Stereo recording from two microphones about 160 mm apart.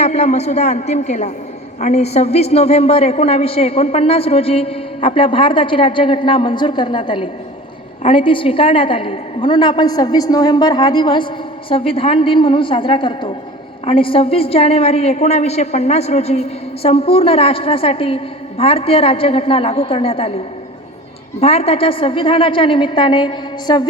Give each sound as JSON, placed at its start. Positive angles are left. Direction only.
{"t": 0.0, "sound": "a man's voice", "side_deg": 45}
{"t": 21.4, "sound": "a woman's voice", "side_deg": 40}